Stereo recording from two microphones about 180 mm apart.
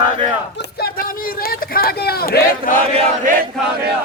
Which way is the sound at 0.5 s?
55° left (ahead or behind).